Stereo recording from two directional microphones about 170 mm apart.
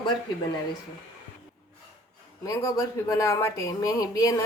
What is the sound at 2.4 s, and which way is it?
A woman's voice, 20° left (ahead or behind).